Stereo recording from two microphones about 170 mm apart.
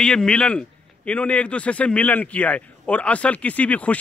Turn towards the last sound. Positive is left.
turn(degrees=10)  # may be behind; listen again after turning